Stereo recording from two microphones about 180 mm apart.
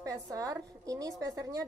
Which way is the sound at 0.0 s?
20° right (ahead or behind).